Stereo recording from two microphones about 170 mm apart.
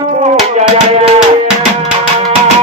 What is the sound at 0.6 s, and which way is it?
Music, 35° right (ahead or behind).